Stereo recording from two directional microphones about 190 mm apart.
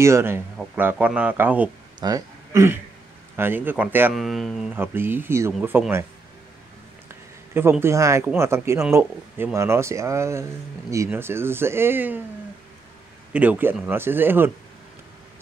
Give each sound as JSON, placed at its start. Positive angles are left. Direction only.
{"t": 0.0, "sound": "speech", "side_deg": -15}
{"t": 2.0, "sound": "a man's voice", "side_deg": -20}
{"t": 4.2, "sound": "speech", "side_deg": 0}
{"t": 7.5, "sound": "speech", "side_deg": -10}
{"t": 13.3, "sound": "speech", "side_deg": -10}